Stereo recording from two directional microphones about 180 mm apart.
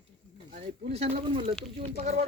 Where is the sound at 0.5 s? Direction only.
35° right (ahead or behind).